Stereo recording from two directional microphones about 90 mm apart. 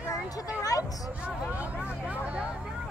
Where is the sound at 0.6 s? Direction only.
40° left (ahead or behind).